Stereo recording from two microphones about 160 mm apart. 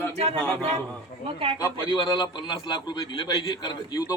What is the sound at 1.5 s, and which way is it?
A man's voice, 25° left (ahead or behind).